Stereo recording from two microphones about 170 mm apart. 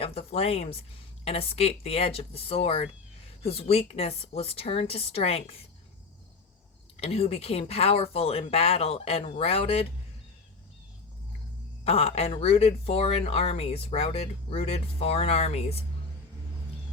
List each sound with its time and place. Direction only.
0.0 s speech: 35° left (ahead or behind)
6.9 s speech: 35° left (ahead or behind)
11.9 s speech: 35° left (ahead or behind)